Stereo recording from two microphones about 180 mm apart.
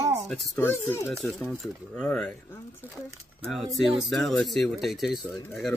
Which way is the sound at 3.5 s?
Centre (ahead or behind).